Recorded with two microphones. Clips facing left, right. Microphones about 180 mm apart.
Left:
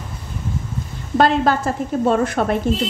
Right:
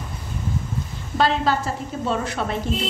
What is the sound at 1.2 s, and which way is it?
A woman's voice, 50° left (ahead or behind).